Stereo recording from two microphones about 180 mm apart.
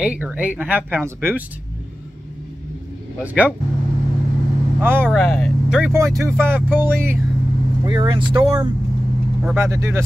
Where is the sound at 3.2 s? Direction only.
10° right (ahead or behind).